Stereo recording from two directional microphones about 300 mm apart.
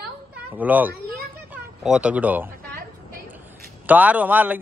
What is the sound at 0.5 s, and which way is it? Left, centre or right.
A man's voice, centre.